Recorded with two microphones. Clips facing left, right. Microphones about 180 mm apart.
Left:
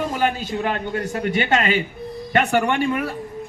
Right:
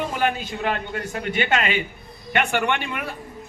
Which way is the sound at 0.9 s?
40° left (ahead or behind).